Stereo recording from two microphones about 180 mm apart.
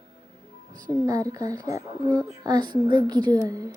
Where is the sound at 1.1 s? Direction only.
20° right (ahead or behind).